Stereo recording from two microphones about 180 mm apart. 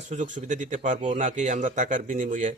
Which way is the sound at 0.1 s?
45° right (ahead or behind).